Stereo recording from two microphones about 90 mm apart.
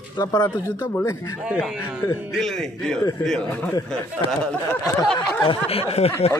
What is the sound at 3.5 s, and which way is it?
Speech, 20° left (ahead or behind).